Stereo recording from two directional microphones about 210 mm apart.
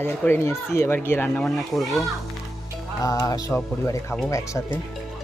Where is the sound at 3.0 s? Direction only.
15° left (ahead or behind).